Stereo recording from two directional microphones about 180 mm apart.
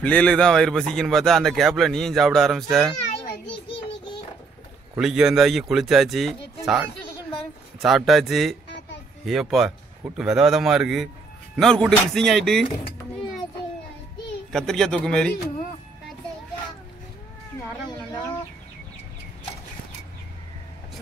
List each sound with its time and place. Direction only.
0.0 s speech: 5° left (ahead or behind)
4.9 s speech: 5° right (ahead or behind)
14.5 s speech: centre (ahead or behind)